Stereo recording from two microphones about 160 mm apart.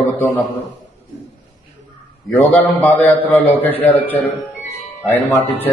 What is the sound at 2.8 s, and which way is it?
A man's voice, 10° left (ahead or behind).